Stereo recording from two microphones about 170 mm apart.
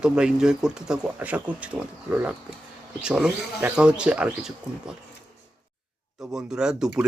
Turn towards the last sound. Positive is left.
turn(degrees=-5)  # may be behind; listen again after turning